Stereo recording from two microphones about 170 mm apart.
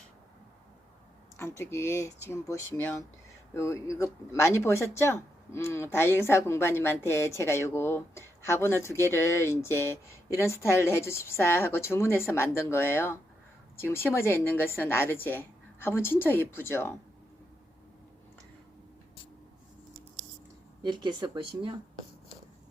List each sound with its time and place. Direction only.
1.4 s speech: 15° left (ahead or behind)
20.8 s speech: 25° right (ahead or behind)